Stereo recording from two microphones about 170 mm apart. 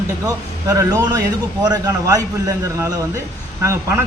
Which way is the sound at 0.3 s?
20° right (ahead or behind).